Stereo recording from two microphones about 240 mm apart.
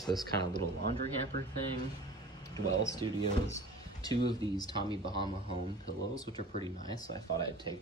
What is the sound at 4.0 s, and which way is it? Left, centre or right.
Speech, centre.